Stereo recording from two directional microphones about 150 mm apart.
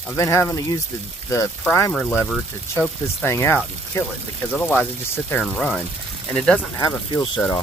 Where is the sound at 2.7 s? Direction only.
15° left (ahead or behind).